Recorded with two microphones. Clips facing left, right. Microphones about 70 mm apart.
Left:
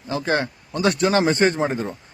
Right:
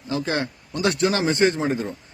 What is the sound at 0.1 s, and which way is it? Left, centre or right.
Speech, left.